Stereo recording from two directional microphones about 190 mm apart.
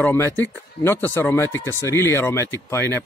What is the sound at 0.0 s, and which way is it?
Speech, 10° left (ahead or behind).